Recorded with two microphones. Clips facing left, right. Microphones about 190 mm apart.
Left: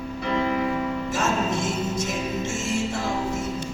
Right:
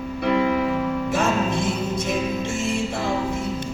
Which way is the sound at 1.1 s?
60° right (ahead or behind).